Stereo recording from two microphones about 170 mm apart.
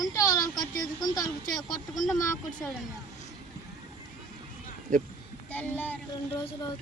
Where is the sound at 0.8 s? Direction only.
20° left (ahead or behind).